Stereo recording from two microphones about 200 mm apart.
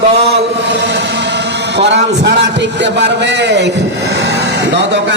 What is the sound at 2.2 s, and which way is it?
A man's voice, 60° right (ahead or behind).